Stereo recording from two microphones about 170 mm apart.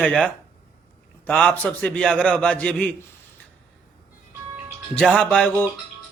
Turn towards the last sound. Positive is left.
turn(degrees=10)  # may be behind; listen again after turning